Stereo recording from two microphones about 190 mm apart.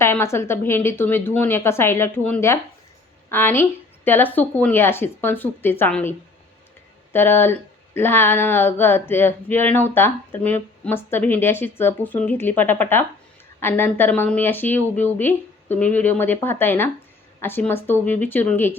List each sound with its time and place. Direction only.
0.0 s speech: 15° left (ahead or behind)